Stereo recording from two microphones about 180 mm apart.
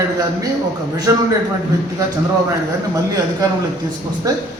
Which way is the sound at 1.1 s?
20° right (ahead or behind).